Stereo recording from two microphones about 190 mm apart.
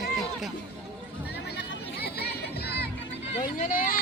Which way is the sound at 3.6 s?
45° left (ahead or behind).